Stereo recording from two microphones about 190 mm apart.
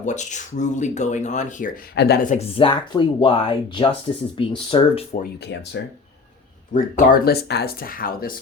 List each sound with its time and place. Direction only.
0.0 s speech: 40° left (ahead or behind)
2.0 s speech: 60° left (ahead or behind)
2.2 s speech: 35° left (ahead or behind)
5.4 s speech: 65° left (ahead or behind)
6.7 s speech: 50° left (ahead or behind)